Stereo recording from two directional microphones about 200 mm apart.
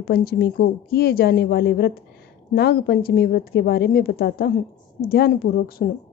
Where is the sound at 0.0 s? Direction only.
50° left (ahead or behind).